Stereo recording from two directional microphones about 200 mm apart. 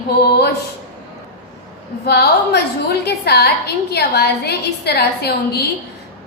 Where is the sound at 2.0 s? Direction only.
55° left (ahead or behind).